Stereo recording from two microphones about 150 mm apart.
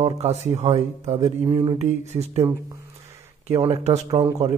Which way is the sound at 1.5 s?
30° right (ahead or behind).